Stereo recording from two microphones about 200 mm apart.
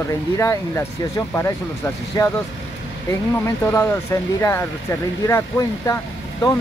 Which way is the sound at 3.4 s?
15° left (ahead or behind).